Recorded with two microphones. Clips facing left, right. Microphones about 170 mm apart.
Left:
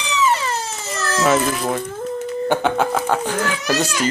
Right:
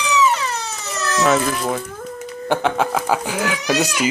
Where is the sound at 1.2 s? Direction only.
5° left (ahead or behind).